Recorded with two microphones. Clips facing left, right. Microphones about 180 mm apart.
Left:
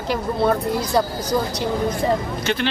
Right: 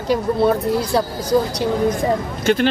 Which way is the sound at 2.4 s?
45° right (ahead or behind).